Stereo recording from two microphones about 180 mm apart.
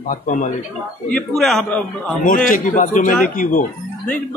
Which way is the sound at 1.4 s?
Centre (ahead or behind).